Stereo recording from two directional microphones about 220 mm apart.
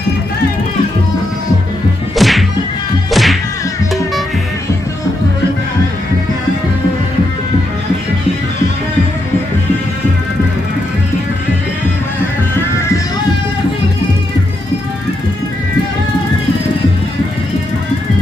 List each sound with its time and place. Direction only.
2.1 s music: centre (ahead or behind)
3.1 s whack: centre (ahead or behind)